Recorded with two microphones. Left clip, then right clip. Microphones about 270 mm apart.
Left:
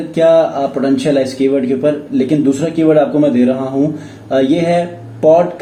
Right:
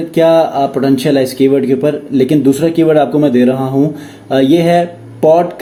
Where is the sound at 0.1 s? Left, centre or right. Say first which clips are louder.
Right 1 dB; right.